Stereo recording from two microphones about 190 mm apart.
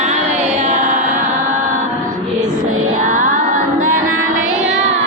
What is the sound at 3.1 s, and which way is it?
Music, 45° right (ahead or behind).